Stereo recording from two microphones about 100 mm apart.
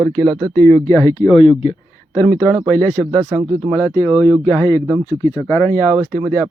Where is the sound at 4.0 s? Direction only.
30° left (ahead or behind).